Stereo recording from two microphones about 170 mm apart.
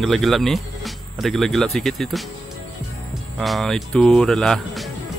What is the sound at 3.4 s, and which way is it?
Speech, centre (ahead or behind).